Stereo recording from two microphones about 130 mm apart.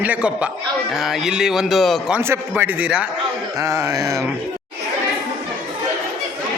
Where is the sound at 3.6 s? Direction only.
20° right (ahead or behind).